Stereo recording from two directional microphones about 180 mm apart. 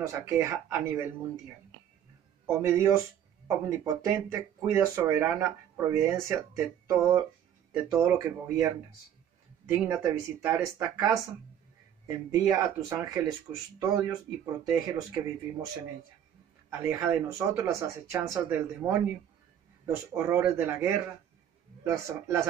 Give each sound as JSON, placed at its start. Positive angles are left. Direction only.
{"t": 0.0, "sound": "speech", "side_deg": -15}
{"t": 2.4, "sound": "speech", "side_deg": -15}
{"t": 9.8, "sound": "speech", "side_deg": -15}
{"t": 16.8, "sound": "speech", "side_deg": -15}
{"t": 20.2, "sound": "speech", "side_deg": -15}
{"t": 22.0, "sound": "speech", "side_deg": -15}